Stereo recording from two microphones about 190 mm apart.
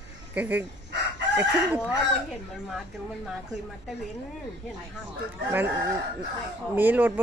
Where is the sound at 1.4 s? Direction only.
5° right (ahead or behind).